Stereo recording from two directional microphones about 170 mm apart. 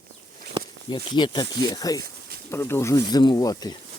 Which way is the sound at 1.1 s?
25° left (ahead or behind).